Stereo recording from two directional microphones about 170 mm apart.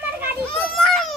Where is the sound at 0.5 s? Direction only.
Centre (ahead or behind).